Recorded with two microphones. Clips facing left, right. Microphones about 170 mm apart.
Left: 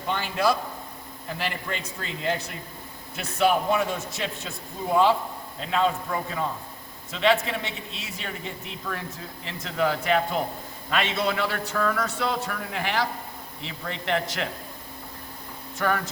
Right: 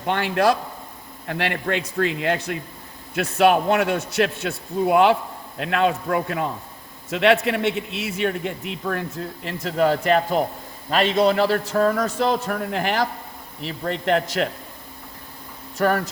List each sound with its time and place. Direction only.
0.0 s a man's voice: 65° right (ahead or behind)
8.8 s a man's voice: 50° right (ahead or behind)
15.8 s speech: 45° right (ahead or behind)